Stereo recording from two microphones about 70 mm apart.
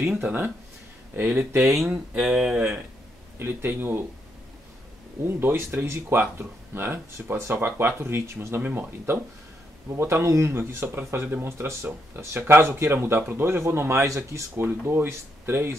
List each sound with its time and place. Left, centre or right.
0.2 s speech: right
1.6 s speech: centre
3.3 s speech: right
5.2 s speech: right
14.5 s speech: right